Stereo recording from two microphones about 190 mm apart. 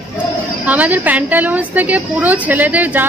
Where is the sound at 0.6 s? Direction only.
10° right (ahead or behind).